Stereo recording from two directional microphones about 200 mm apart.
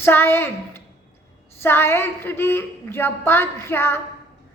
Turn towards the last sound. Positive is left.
turn(degrees=10)  # may be behind; listen again after turning